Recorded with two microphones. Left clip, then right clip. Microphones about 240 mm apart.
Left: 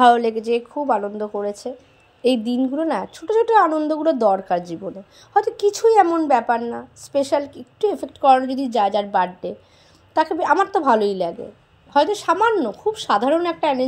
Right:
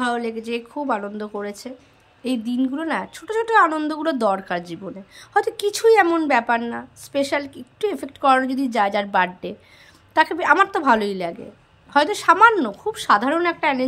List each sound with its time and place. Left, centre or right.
0.0 s a woman's voice: centre